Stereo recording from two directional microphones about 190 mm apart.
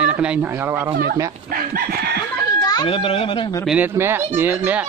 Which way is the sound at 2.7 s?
25° left (ahead or behind).